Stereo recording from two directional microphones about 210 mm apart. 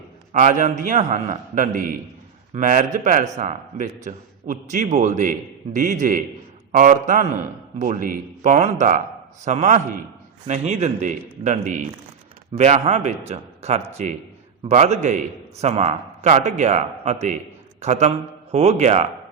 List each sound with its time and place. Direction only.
0.3 s a man's voice: 35° right (ahead or behind)